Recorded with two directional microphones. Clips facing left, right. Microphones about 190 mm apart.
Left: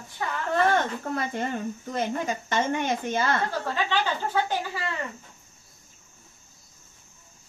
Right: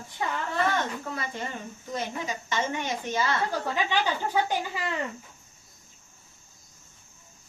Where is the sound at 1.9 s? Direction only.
55° left (ahead or behind).